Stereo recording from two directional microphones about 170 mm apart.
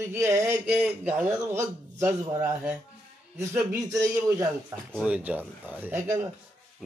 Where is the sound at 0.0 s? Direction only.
15° right (ahead or behind).